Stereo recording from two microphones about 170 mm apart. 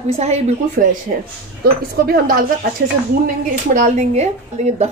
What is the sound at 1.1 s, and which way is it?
Speech, 60° right (ahead or behind).